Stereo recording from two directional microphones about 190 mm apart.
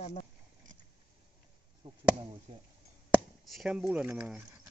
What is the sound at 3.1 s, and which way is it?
Speech, 5° right (ahead or behind).